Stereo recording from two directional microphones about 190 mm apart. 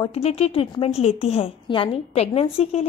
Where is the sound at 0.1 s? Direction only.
30° left (ahead or behind).